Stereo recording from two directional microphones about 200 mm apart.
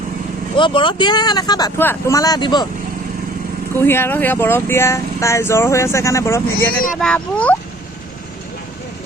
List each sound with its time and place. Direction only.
0.5 s speech: 25° left (ahead or behind)
3.8 s speech: 10° left (ahead or behind)